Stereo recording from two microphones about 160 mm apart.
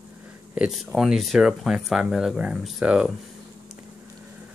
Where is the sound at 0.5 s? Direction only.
Centre (ahead or behind).